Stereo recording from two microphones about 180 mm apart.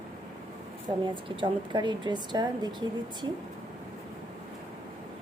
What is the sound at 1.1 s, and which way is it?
A woman's voice, 25° right (ahead or behind).